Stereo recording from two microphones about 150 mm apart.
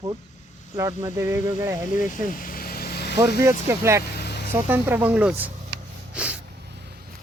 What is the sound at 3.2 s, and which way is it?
Speech, 20° right (ahead or behind).